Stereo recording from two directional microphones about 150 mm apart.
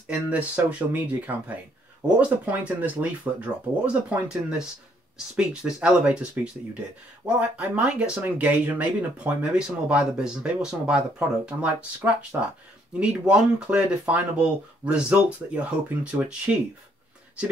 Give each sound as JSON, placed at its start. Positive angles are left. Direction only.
{"t": 0.0, "sound": "speech", "side_deg": -10}